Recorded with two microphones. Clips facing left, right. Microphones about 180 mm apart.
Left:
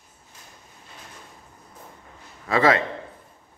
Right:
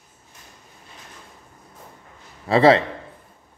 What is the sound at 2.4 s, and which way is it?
Speech, 30° right (ahead or behind).